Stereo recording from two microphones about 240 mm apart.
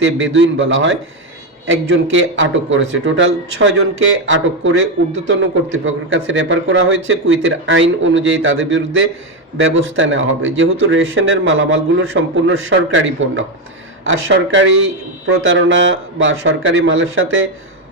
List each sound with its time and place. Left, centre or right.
0.0 s a man's voice: right